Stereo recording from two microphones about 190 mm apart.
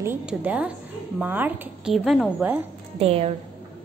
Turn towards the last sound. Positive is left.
turn(degrees=-30)  # may be behind; listen again after turning